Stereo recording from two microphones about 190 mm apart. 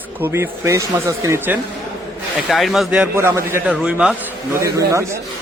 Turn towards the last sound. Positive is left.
turn(degrees=-15)  # may be behind; listen again after turning